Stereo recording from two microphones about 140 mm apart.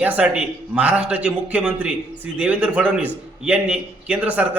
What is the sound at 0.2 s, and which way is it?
A man's voice, 5° right (ahead or behind).